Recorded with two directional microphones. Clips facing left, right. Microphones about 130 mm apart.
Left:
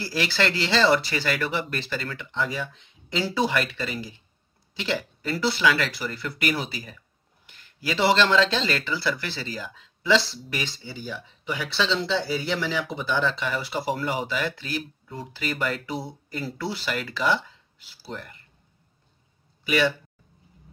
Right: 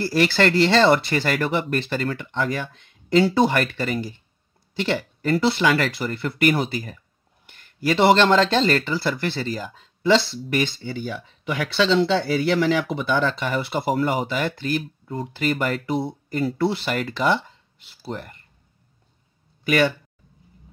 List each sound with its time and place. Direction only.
0.0 s speech: 45° right (ahead or behind)
5.2 s speech: 50° right (ahead or behind)
19.6 s speech: 50° right (ahead or behind)